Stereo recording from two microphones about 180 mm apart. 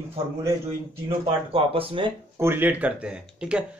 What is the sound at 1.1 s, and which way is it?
Speech, 30° right (ahead or behind).